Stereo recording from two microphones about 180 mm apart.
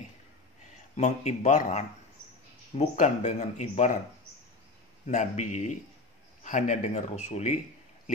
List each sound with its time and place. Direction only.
0.9 s speech: 40° left (ahead or behind)
5.0 s speech: 40° left (ahead or behind)